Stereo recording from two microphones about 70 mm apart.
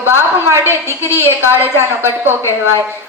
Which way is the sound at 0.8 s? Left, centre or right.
Left.